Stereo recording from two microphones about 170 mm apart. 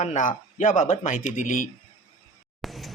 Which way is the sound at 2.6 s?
Centre (ahead or behind).